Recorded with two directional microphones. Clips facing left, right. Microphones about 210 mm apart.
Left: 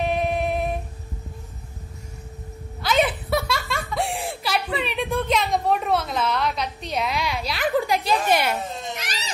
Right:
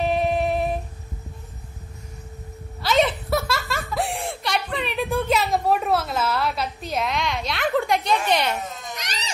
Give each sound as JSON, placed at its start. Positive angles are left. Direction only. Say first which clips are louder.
{"t": 0.1, "sound": "female singing", "louder": "right 2 dB", "side_deg": 0}
{"t": 2.8, "sound": "a sound", "louder": "right 1 dB", "side_deg": 0}
{"t": 8.3, "sound": "speech", "louder": "left 2 dB", "side_deg": 5}
{"t": 8.6, "sound": "baby cry", "louder": "left 3 dB", "side_deg": 30}